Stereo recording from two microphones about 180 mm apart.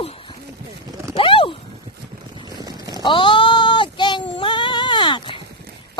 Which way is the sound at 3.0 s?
25° left (ahead or behind).